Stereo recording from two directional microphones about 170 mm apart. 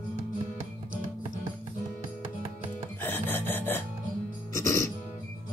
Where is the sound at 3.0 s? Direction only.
10° left (ahead or behind).